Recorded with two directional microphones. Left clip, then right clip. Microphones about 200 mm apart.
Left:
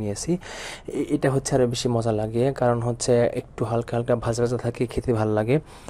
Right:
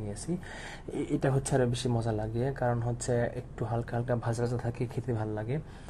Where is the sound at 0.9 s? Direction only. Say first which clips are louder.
Left 7 dB; 15° left (ahead or behind); by 5.5 s 35° left (ahead or behind).